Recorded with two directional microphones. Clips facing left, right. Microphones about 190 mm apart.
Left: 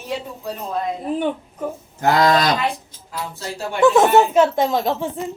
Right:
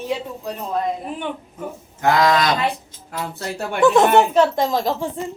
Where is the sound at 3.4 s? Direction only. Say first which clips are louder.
Right 1 dB; 60° right (ahead or behind).